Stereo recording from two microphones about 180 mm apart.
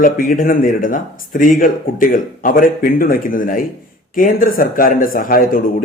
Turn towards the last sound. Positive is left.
turn(degrees=50)  # may be behind; listen again after turning